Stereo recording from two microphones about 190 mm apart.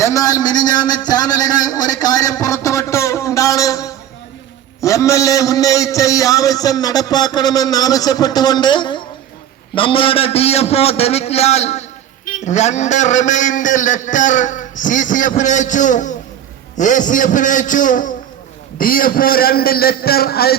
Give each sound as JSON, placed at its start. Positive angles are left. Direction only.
{"t": 0.0, "sound": "a man's voice", "side_deg": 15}